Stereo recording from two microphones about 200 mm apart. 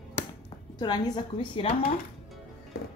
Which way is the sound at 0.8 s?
20° left (ahead or behind).